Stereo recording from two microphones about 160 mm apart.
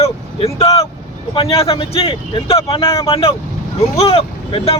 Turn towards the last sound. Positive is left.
turn(degrees=35)  # may be behind; listen again after turning